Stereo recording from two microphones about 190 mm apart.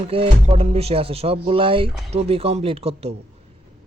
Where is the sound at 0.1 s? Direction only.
30° right (ahead or behind).